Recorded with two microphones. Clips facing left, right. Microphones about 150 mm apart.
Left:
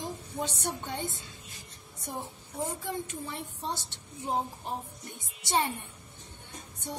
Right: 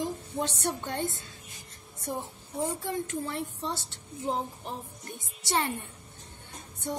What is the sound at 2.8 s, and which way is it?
Speech, 20° left (ahead or behind).